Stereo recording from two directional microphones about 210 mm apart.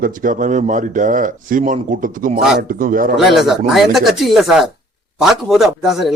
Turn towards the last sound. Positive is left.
turn(degrees=0)  # may be behind; listen again after turning